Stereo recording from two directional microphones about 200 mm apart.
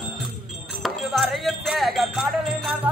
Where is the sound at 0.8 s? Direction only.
Centre (ahead or behind).